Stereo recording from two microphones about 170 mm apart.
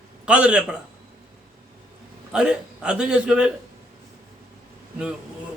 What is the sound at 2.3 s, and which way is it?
A man's voice, 5° right (ahead or behind).